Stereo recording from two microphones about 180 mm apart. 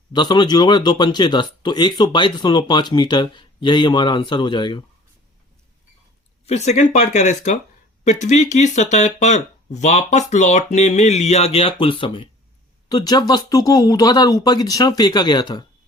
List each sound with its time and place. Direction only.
0.1 s speech: 25° left (ahead or behind)
6.4 s speech: 40° left (ahead or behind)